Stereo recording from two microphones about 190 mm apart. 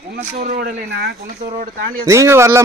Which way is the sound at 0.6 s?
55° right (ahead or behind).